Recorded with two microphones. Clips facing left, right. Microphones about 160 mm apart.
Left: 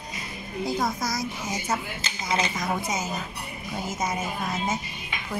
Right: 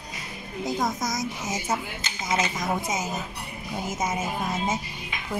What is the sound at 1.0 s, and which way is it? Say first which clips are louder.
A child's voice: even; 20° right (ahead or behind).